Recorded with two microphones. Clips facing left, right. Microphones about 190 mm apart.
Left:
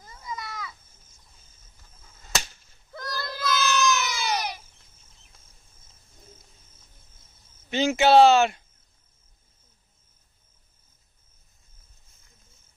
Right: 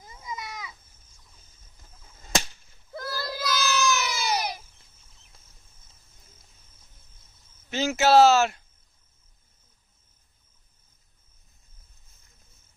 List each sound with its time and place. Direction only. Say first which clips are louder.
0.0 s cat: left 1 dB; 15° right (ahead or behind)
2.9 s a sound: right 2 dB; 5° right (ahead or behind)
7.7 s speech: left 2 dB; 5° right (ahead or behind)